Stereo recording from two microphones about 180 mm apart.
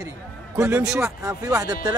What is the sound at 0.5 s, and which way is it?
Speech, 15° right (ahead or behind).